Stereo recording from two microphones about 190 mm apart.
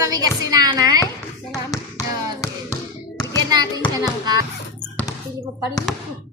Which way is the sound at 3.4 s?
20° right (ahead or behind).